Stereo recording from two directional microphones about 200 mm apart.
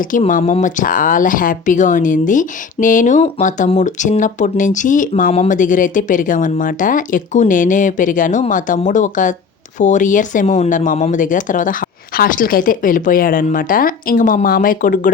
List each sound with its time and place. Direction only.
0.0 s speech: 40° left (ahead or behind)